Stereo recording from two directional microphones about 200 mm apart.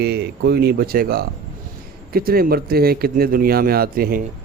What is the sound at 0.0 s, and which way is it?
A man's voice, 55° right (ahead or behind).